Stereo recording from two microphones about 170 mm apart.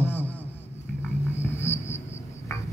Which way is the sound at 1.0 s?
15° left (ahead or behind).